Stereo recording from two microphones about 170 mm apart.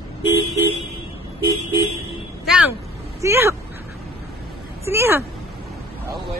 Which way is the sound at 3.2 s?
15° right (ahead or behind).